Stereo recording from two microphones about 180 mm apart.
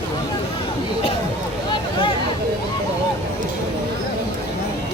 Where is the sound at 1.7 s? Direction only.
25° left (ahead or behind).